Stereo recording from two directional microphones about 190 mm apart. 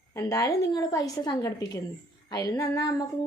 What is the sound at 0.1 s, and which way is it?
A woman's voice, 15° left (ahead or behind).